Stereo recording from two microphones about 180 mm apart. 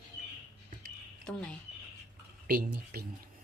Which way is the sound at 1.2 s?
5° left (ahead or behind).